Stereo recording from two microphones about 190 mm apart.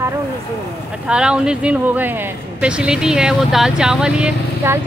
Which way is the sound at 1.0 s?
5° right (ahead or behind).